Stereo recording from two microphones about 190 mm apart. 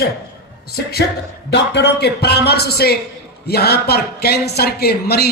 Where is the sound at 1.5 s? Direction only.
65° left (ahead or behind).